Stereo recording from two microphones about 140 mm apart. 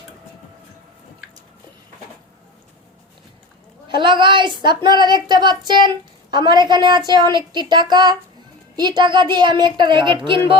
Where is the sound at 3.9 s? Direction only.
35° right (ahead or behind).